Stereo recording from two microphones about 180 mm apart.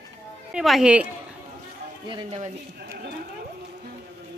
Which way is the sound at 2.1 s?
35° right (ahead or behind).